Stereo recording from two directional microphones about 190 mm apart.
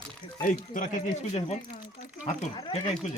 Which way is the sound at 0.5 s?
45° left (ahead or behind).